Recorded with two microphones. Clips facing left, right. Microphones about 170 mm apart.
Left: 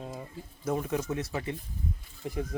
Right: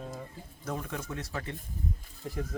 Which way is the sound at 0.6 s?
20° left (ahead or behind).